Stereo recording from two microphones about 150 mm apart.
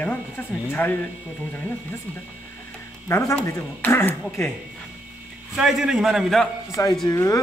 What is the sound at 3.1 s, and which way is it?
Speech, 20° left (ahead or behind).